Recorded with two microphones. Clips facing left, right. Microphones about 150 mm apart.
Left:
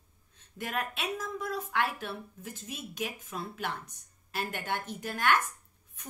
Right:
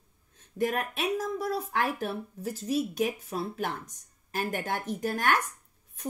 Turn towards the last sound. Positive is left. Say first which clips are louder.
# right 1 dB
turn(degrees=-40)  # may be behind; listen again after turning